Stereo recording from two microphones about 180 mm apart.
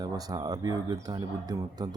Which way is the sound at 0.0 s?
20° right (ahead or behind).